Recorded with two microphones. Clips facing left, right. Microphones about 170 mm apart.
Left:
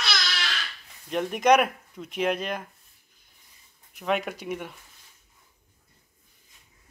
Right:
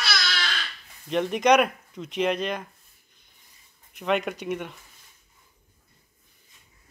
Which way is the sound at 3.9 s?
5° left (ahead or behind).